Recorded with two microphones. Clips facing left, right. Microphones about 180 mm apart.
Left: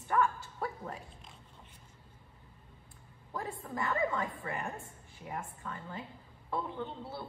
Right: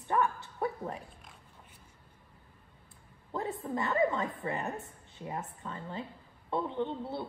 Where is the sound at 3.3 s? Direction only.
20° right (ahead or behind).